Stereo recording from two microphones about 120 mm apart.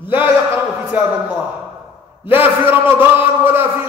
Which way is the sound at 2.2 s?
15° right (ahead or behind).